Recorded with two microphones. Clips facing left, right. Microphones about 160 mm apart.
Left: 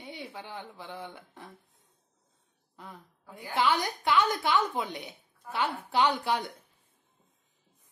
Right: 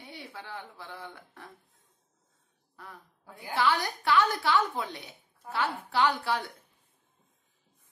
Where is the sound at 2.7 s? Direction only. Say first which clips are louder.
Left 1 dB; 20° left (ahead or behind).